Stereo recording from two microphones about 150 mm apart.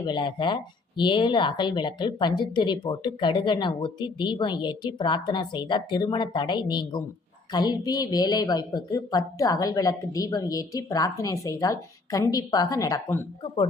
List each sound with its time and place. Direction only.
0.0 s a woman's voice: 30° left (ahead or behind)